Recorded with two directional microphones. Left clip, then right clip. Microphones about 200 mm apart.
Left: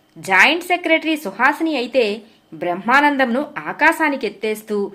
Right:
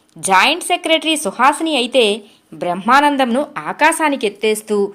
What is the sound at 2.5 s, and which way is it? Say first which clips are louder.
A woman's voice: right 3 dB; 30° right (ahead or behind).